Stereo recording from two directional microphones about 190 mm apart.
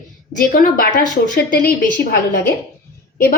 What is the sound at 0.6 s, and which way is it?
A woman's voice, 45° left (ahead or behind).